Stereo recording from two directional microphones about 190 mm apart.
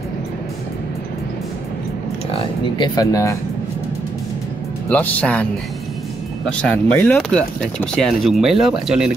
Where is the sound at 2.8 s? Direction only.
20° left (ahead or behind).